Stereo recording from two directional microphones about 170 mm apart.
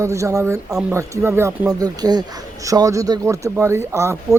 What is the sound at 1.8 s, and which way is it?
Speech, 25° right (ahead or behind).